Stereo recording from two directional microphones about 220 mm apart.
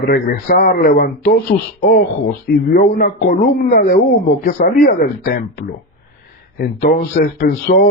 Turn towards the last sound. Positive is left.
turn(degrees=45)  # may be behind; listen again after turning